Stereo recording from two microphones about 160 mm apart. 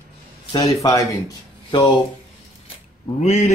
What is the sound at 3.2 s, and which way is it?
Speech, 45° left (ahead or behind).